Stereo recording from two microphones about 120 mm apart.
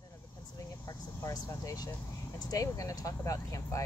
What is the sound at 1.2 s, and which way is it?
Speech, 30° left (ahead or behind).